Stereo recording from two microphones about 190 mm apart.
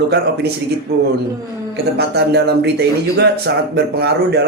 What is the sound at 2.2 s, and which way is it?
Speech, 60° right (ahead or behind).